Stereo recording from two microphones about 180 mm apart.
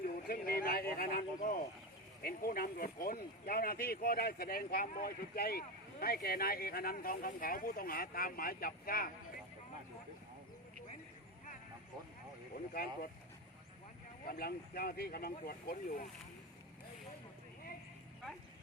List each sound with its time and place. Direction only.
0.3 s a sound: 55° left (ahead or behind)
2.2 s speech: 55° left (ahead or behind)
12.7 s speech: 55° left (ahead or behind)
14.3 s speech: 55° left (ahead or behind)